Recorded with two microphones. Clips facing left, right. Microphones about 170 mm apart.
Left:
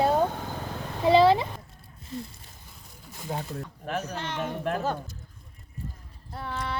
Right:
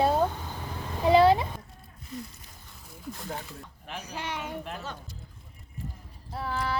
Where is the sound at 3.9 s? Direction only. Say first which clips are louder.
Left 9 dB; 50° left (ahead or behind).